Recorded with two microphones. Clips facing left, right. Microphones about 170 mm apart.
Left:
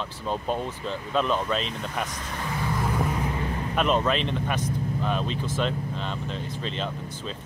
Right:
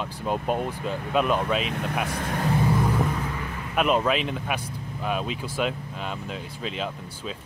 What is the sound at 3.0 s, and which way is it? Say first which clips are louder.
Vehicle: left 1 dB; 20° left (ahead or behind).